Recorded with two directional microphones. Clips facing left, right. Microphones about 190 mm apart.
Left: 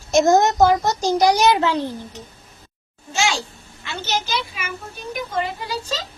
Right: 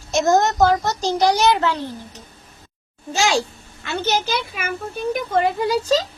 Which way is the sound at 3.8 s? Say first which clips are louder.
Right 4 dB; 55° right (ahead or behind).